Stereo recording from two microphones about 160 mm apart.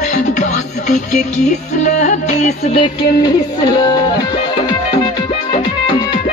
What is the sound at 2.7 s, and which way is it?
Music, 25° left (ahead or behind).